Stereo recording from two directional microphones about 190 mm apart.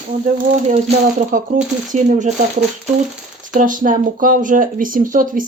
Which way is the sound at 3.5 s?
45° right (ahead or behind).